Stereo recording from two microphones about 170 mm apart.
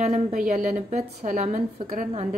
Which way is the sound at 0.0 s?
45° right (ahead or behind).